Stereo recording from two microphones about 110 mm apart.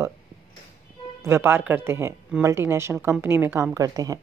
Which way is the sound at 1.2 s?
25° right (ahead or behind).